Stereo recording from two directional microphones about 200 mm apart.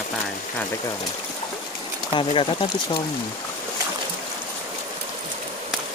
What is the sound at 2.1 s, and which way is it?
Speech, 25° left (ahead or behind).